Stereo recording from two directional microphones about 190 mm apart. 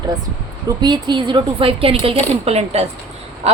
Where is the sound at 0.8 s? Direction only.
25° right (ahead or behind).